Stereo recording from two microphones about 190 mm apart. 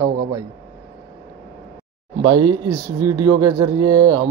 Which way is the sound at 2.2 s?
25° right (ahead or behind).